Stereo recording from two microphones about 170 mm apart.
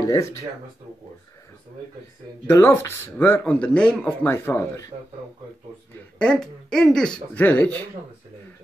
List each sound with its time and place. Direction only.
0.0 s speech: 20° left (ahead or behind)
2.4 s a man's voice: 15° left (ahead or behind)
6.1 s a man's voice: 5° left (ahead or behind)